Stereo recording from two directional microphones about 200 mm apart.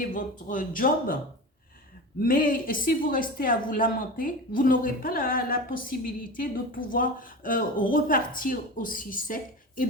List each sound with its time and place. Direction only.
0.0 s speech: 40° left (ahead or behind)
2.2 s speech: 45° left (ahead or behind)